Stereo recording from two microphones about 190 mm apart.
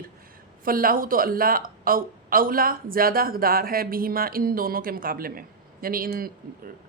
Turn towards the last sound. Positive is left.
turn(degrees=-50)  # may be behind; listen again after turning